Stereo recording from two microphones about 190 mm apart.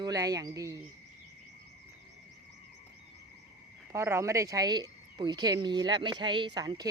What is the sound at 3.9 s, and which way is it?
Speech, 15° right (ahead or behind).